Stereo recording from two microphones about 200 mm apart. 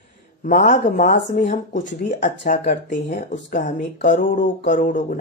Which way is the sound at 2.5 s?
40° left (ahead or behind).